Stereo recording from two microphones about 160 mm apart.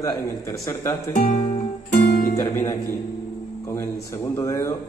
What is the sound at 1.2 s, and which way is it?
Music, 55° left (ahead or behind).